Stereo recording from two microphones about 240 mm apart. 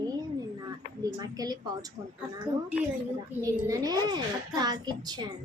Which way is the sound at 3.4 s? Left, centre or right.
Centre.